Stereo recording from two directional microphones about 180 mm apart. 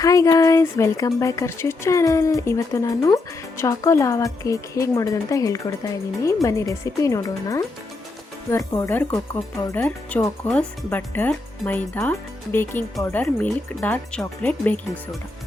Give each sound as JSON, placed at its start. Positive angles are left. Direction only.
{"t": 0.0, "sound": "speech", "side_deg": 20}